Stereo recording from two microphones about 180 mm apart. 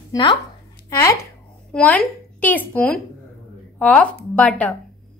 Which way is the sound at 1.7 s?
5° left (ahead or behind).